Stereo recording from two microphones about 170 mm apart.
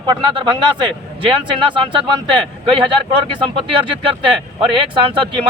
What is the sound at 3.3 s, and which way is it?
Speech, 30° right (ahead or behind).